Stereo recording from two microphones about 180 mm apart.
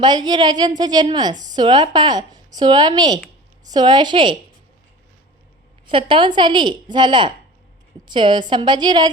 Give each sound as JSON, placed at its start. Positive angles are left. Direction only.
{"t": 0.0, "sound": "a woman's voice", "side_deg": -25}
{"t": 5.8, "sound": "a woman's voice", "side_deg": -30}